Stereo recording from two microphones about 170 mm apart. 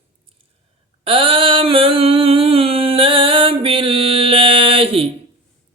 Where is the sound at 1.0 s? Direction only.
30° right (ahead or behind).